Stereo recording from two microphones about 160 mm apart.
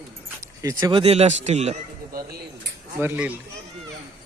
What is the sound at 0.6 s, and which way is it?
Speech, 25° right (ahead or behind).